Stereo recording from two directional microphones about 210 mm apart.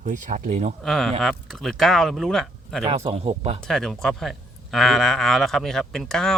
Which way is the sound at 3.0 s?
25° right (ahead or behind).